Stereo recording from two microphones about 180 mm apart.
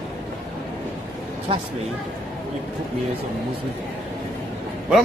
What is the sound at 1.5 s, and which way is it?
Speech, 30° right (ahead or behind).